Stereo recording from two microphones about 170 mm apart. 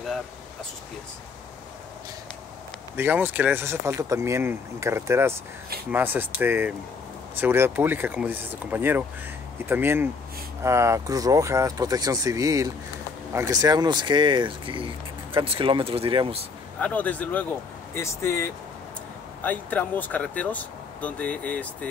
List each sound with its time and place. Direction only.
3.0 s speech: 10° right (ahead or behind); by 16.4 s 30° right (ahead or behind)
16.8 s speech: 10° left (ahead or behind)